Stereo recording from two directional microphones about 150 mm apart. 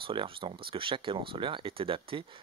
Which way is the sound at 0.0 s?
35° right (ahead or behind).